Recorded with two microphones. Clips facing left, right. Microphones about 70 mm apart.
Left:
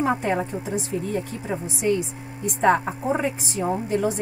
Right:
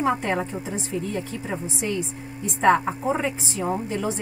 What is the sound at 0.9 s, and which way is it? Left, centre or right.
Speech, right.